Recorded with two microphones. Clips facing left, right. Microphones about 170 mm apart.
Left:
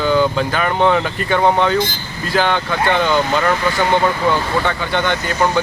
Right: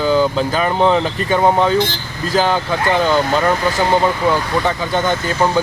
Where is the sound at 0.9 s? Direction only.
25° right (ahead or behind).